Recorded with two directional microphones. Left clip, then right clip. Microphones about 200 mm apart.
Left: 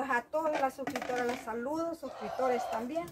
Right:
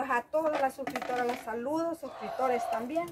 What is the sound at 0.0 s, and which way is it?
Speech, 5° left (ahead or behind).